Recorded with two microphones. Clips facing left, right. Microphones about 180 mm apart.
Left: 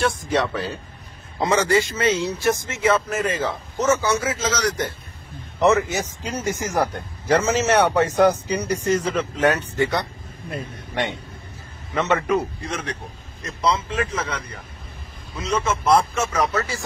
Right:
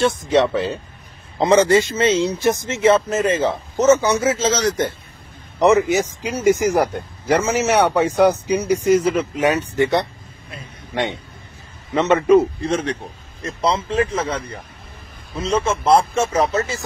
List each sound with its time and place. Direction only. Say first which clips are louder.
0.0 s speech: right 5 dB; 25° right (ahead or behind)
11.9 s speech: right 7 dB; 20° right (ahead or behind)